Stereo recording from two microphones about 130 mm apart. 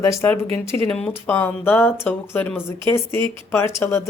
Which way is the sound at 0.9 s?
10° left (ahead or behind).